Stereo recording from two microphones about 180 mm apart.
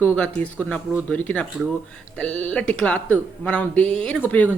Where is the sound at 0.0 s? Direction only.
10° left (ahead or behind).